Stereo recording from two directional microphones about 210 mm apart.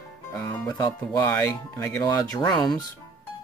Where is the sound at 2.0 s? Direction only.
15° left (ahead or behind).